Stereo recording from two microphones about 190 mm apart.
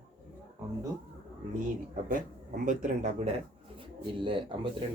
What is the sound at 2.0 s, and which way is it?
Speech, 45° right (ahead or behind).